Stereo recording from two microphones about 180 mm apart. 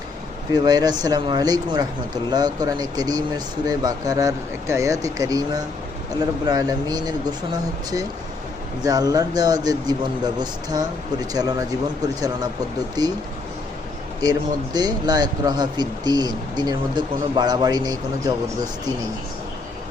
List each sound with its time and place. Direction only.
0.5 s speech: 20° right (ahead or behind)
14.2 s speech: 20° right (ahead or behind)